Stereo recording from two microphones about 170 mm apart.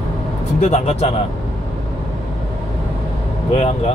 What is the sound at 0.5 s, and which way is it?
Speech, 40° left (ahead or behind).